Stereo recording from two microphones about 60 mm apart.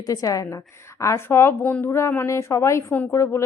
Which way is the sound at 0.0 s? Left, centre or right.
Left.